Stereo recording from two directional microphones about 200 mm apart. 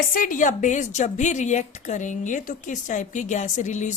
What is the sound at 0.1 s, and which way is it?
A woman's voice, 40° left (ahead or behind).